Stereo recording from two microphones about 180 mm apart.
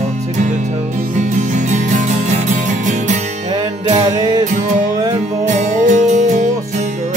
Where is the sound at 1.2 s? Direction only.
40° right (ahead or behind).